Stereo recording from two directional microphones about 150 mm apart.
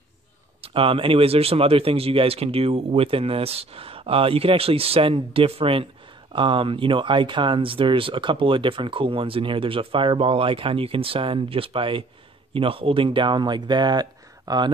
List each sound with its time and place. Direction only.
0.6 s speech: 35° right (ahead or behind)